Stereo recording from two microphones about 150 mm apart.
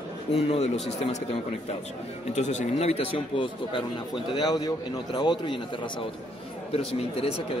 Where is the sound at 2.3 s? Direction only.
50° left (ahead or behind); by 5.6 s 30° left (ahead or behind).